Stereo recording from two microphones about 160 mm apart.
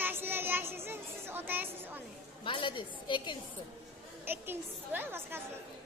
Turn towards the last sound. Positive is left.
turn(degrees=-15)  # may be behind; listen again after turning